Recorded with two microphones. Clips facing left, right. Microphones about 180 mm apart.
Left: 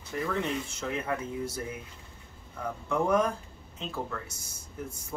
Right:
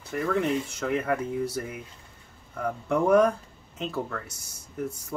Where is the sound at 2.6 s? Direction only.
65° right (ahead or behind).